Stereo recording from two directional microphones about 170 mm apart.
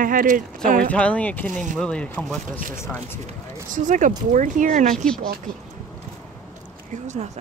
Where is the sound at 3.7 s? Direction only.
50° right (ahead or behind).